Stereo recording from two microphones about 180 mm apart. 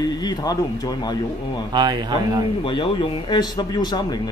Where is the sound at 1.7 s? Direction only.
25° right (ahead or behind).